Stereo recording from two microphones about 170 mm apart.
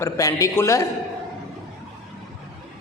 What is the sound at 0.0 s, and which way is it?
Speech, 20° left (ahead or behind).